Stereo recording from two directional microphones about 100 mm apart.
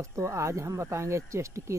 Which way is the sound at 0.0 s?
30° right (ahead or behind).